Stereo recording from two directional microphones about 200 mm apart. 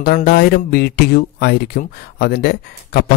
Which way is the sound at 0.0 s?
50° left (ahead or behind).